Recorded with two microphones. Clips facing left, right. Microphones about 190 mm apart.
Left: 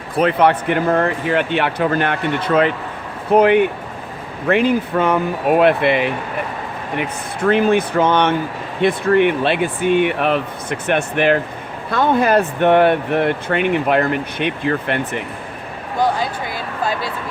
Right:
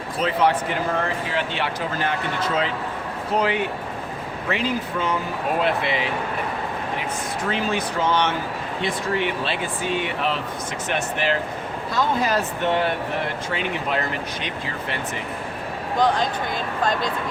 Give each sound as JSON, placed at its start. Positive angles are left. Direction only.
{"t": 0.2, "sound": "speech", "side_deg": 60}
{"t": 16.0, "sound": "a man's voice", "side_deg": 10}